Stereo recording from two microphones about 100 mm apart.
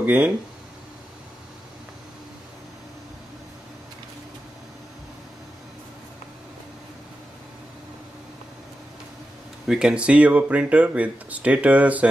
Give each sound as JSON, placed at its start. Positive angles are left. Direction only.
{"t": 0.0, "sound": "speech", "side_deg": -20}
{"t": 9.7, "sound": "speech", "side_deg": -10}